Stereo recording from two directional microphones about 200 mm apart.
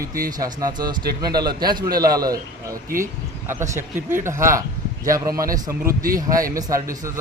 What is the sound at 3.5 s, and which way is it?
Speech, 10° right (ahead or behind).